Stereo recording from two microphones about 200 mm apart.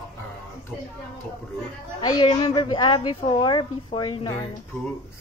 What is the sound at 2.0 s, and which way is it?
A woman's voice, 20° left (ahead or behind).